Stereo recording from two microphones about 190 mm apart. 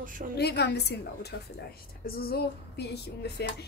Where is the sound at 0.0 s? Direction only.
45° right (ahead or behind).